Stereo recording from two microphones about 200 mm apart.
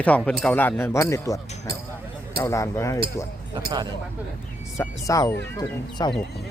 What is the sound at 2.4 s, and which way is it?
Speech, 15° left (ahead or behind).